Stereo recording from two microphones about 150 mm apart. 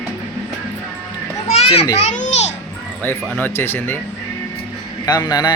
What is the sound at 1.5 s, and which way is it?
Children playing, 40° left (ahead or behind).